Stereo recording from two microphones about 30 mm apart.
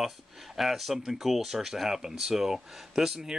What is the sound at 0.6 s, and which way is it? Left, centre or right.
Speech, centre.